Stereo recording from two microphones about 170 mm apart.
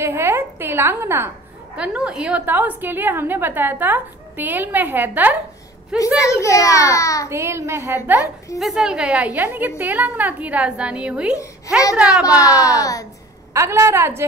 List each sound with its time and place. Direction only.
0.0 s a woman's voice: 15° right (ahead or behind)
5.9 s a child's voice: 20° left (ahead or behind)
7.2 s a woman's voice: 15° right (ahead or behind)
8.5 s a woman's voice: centre (ahead or behind)
12.4 s a child's voice: 20° left (ahead or behind)
13.5 s a woman's voice: 15° right (ahead or behind)